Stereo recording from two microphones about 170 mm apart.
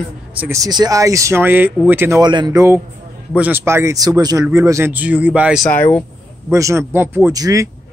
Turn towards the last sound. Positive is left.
turn(degrees=-20)  # may be behind; listen again after turning